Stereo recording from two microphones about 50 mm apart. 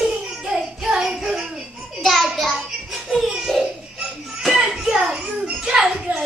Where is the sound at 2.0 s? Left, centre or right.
Centre.